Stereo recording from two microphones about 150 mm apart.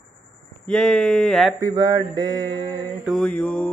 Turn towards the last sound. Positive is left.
turn(degrees=10)  # may be behind; listen again after turning